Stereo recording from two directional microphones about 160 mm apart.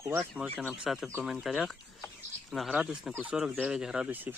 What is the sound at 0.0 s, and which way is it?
Speech, 20° right (ahead or behind).